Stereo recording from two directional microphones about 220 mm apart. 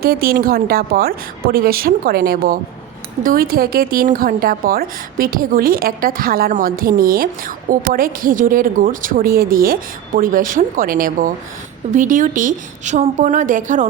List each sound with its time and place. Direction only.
0.0 s a woman's voice: 40° right (ahead or behind)